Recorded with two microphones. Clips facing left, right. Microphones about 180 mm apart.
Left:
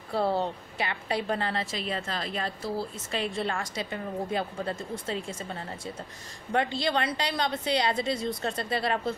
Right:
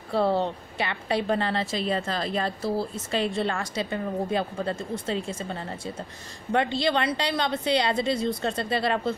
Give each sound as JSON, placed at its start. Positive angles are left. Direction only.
{"t": 0.1, "sound": "a woman's voice", "side_deg": -65}
{"t": 0.4, "sound": "a woman's voice", "side_deg": -25}
{"t": 6.5, "sound": "a woman's voice", "side_deg": -25}